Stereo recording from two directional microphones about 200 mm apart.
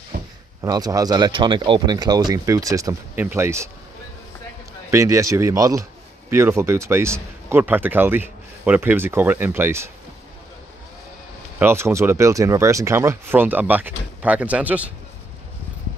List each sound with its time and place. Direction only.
0.1 s a sound: 50° right (ahead or behind)
0.6 s speech: 20° right (ahead or behind)
4.9 s speech: 15° right (ahead or behind)
11.6 s speech: 10° right (ahead or behind)